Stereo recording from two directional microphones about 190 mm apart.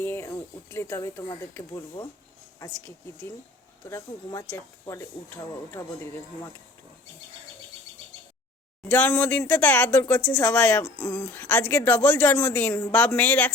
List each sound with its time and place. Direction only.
0.0 s speech: 15° left (ahead or behind)
3.8 s speech: 15° left (ahead or behind)
8.9 s speech: 10° left (ahead or behind)